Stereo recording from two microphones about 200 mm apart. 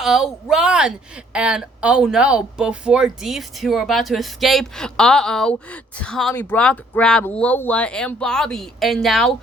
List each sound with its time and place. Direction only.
0.0 s speech: centre (ahead or behind)